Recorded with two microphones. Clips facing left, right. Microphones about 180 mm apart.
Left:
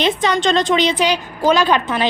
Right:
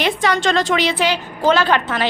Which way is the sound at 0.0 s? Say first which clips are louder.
Left 1 dB; 20° left (ahead or behind).